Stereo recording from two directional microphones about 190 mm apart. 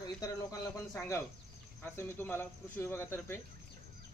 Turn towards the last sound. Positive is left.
turn(degrees=10)  # may be behind; listen again after turning